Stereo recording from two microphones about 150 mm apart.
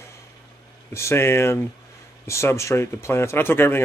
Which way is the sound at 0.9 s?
15° left (ahead or behind).